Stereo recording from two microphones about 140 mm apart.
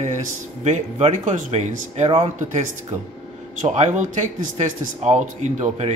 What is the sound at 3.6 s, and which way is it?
Speech, 55° right (ahead or behind).